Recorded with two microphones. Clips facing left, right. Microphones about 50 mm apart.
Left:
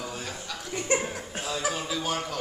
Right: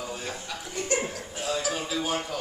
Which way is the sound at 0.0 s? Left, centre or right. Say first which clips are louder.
Right 1 dB; centre.